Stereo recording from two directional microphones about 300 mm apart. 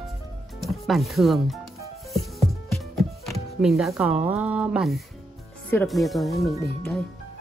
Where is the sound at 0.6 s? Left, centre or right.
Centre.